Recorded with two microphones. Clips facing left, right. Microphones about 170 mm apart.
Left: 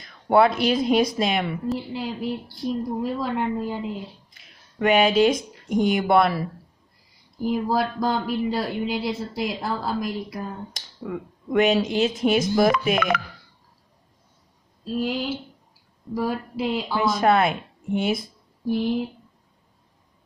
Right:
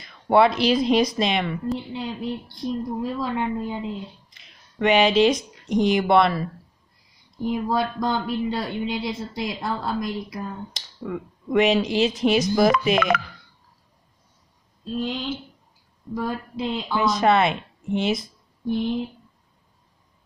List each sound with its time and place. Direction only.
0.0 s speech: centre (ahead or behind)
5.5 s a sound: centre (ahead or behind)
5.9 s speech: centre (ahead or behind)
14.9 s speech: 5° left (ahead or behind)
18.0 s speech: 55° left (ahead or behind)